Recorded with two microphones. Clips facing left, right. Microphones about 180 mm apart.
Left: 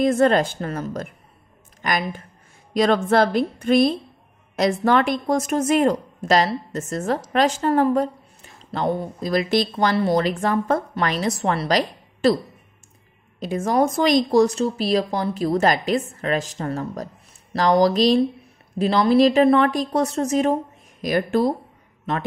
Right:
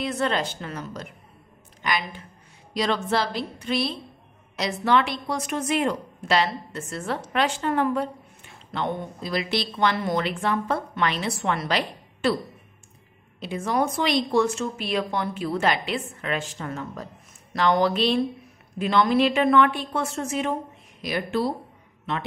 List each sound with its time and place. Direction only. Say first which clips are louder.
0.0 s a woman's voice: left 9 dB; 45° left (ahead or behind)
13.4 s a woman's voice: left 5 dB; 45° left (ahead or behind)